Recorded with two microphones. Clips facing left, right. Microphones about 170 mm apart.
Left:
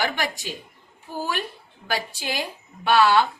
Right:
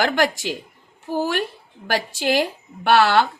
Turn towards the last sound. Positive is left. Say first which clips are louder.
# right 2 dB
turn(degrees=-80)